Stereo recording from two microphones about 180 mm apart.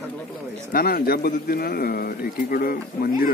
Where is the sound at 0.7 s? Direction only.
55° left (ahead or behind).